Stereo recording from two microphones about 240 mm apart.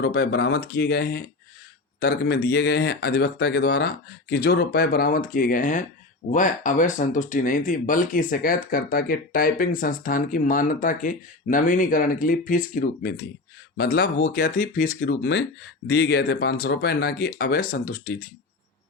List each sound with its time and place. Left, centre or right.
0.0 s speech: left